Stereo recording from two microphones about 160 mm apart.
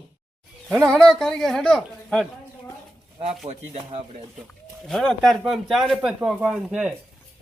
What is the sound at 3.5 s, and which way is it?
Speech, 45° right (ahead or behind).